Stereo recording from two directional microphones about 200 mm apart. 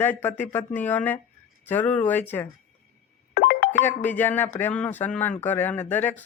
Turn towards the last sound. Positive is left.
turn(degrees=10)  # may be behind; listen again after turning